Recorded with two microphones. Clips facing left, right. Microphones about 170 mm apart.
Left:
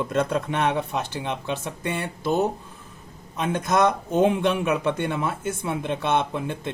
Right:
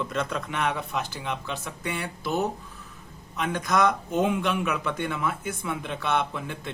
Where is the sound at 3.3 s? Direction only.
25° left (ahead or behind).